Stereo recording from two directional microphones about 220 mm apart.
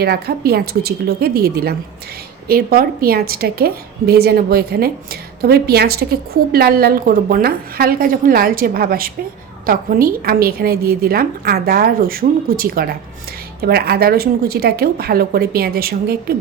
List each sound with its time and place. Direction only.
0.0 s a woman's voice: 45° right (ahead or behind)